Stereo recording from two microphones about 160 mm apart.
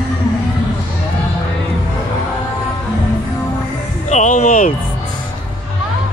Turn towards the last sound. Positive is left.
turn(degrees=60)  # may be behind; listen again after turning